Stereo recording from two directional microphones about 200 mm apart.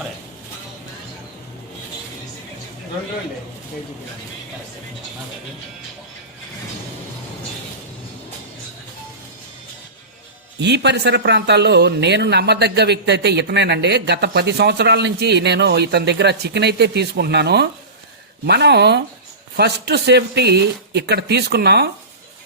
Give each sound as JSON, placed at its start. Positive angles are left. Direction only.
{"t": 10.6, "sound": "speech", "side_deg": -60}